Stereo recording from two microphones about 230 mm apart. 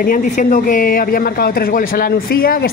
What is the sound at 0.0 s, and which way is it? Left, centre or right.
A man's voice, left.